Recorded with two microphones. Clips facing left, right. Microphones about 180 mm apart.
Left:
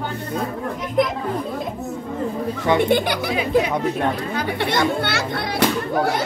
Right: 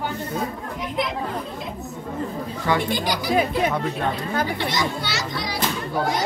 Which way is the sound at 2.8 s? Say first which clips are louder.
Left 6 dB; 60° left (ahead or behind).